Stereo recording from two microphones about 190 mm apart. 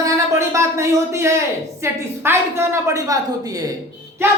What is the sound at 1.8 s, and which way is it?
A woman's voice, 15° right (ahead or behind).